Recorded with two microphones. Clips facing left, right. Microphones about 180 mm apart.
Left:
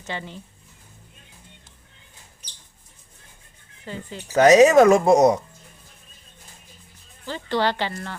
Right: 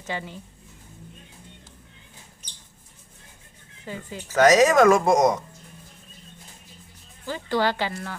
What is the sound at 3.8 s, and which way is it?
Speech, 10° right (ahead or behind).